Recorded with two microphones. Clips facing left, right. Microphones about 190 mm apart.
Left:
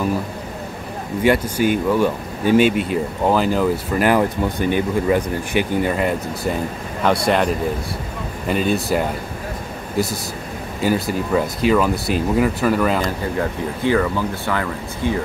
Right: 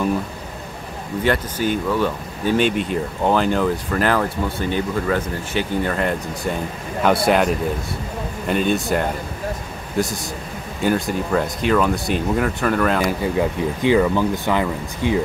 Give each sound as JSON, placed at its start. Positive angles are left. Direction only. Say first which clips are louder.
{"t": 1.2, "sound": "speech", "louder": "left 4 dB", "side_deg": 10}
{"t": 10.8, "sound": "speech", "louder": "even", "side_deg": 5}
{"t": 13.0, "sound": "speech", "louder": "right 2 dB", "side_deg": -10}